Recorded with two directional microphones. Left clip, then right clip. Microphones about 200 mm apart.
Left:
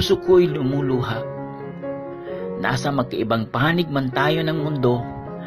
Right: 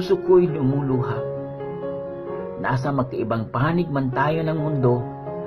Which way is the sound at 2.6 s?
20° left (ahead or behind).